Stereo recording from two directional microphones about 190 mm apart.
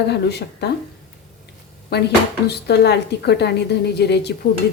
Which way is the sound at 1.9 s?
55° left (ahead or behind).